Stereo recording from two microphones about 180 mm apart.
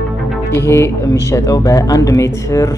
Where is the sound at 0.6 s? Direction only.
15° left (ahead or behind).